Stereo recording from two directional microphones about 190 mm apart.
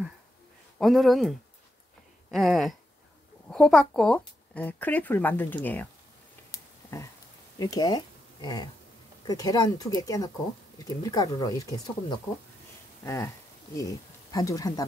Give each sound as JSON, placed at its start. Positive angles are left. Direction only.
{"t": 0.7, "sound": "speech", "side_deg": 0}
{"t": 2.3, "sound": "speech", "side_deg": 0}
{"t": 6.5, "sound": "a sound", "side_deg": 15}
{"t": 7.5, "sound": "speech", "side_deg": 20}
{"t": 13.0, "sound": "speech", "side_deg": 15}